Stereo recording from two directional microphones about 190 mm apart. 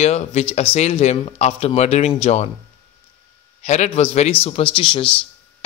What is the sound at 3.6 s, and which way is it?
Speech, 35° left (ahead or behind).